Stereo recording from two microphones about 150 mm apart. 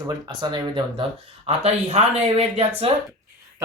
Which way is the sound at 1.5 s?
45° right (ahead or behind).